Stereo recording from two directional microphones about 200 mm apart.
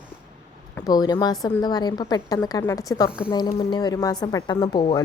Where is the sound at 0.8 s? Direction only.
20° left (ahead or behind).